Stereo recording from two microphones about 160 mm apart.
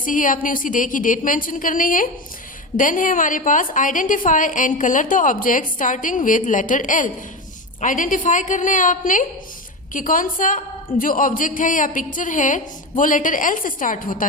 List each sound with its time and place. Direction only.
0.0 s a woman's voice: 55° left (ahead or behind)